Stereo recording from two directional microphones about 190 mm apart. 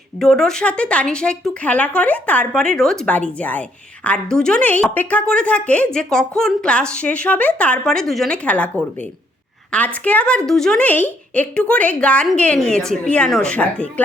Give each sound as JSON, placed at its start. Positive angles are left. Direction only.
{"t": 0.2, "sound": "a woman's voice", "side_deg": 5}
{"t": 9.7, "sound": "a woman's voice", "side_deg": 5}